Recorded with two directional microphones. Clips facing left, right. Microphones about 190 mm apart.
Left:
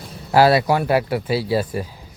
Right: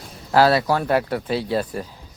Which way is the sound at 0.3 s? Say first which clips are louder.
Left 2 dB; 10° left (ahead or behind).